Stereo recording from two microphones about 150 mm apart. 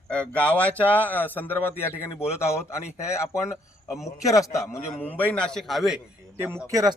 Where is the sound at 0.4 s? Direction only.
10° left (ahead or behind).